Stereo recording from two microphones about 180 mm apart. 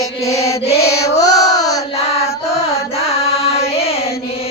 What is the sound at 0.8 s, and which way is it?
Music, 15° left (ahead or behind).